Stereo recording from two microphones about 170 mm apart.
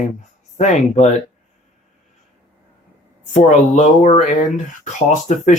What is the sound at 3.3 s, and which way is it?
Speech, 45° left (ahead or behind).